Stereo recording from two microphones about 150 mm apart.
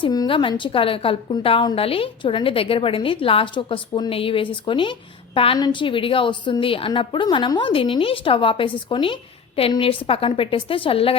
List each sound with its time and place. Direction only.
0.0 s a woman's voice: 30° left (ahead or behind)